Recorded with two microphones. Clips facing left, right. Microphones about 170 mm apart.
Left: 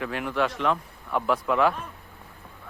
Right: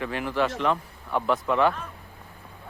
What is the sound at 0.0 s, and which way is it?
Speech, centre (ahead or behind).